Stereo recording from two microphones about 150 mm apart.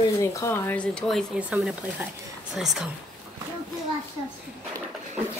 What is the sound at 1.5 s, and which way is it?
Speech, 10° right (ahead or behind).